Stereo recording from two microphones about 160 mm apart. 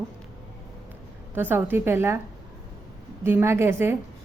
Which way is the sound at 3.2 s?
15° right (ahead or behind).